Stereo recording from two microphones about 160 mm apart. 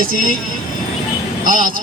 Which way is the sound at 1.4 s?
60° right (ahead or behind).